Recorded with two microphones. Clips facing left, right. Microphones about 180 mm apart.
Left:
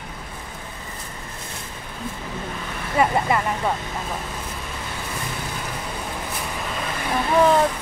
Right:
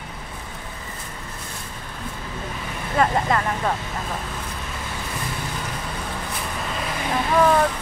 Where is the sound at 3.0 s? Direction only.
10° left (ahead or behind).